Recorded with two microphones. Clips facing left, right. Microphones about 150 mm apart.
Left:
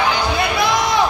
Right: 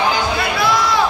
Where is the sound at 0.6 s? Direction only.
20° left (ahead or behind).